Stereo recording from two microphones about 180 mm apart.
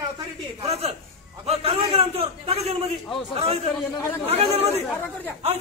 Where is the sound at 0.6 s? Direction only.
35° right (ahead or behind).